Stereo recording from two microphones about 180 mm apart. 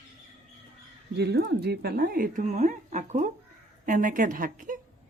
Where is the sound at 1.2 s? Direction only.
65° right (ahead or behind); by 4.8 s 50° right (ahead or behind).